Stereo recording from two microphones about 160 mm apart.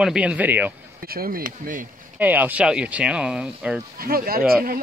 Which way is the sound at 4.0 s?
65° right (ahead or behind).